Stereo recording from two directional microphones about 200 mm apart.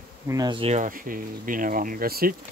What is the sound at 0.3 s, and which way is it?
Speech, 20° right (ahead or behind).